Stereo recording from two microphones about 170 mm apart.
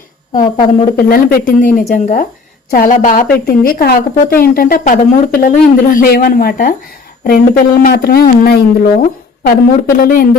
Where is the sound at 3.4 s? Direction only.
60° left (ahead or behind).